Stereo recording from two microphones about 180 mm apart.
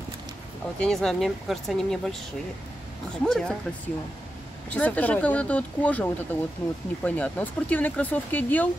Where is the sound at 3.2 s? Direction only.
5° left (ahead or behind).